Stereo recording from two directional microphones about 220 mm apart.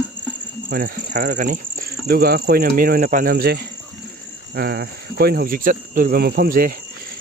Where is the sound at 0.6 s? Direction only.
40° right (ahead or behind).